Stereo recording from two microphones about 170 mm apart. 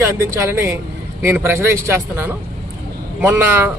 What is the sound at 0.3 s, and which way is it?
Speech, 15° right (ahead or behind).